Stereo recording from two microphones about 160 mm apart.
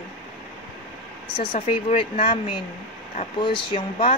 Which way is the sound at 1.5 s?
40° left (ahead or behind).